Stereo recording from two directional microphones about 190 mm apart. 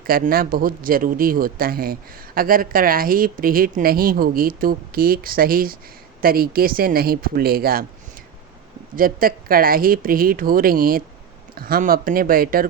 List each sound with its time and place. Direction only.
0.1 s speech: 50° right (ahead or behind)
9.0 s speech: 50° right (ahead or behind)